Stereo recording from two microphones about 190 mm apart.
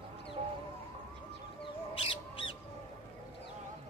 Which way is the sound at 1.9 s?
30° left (ahead or behind).